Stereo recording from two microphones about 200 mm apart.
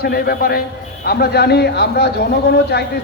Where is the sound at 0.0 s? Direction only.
50° left (ahead or behind).